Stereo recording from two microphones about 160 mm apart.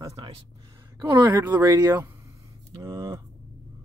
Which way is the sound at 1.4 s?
15° right (ahead or behind).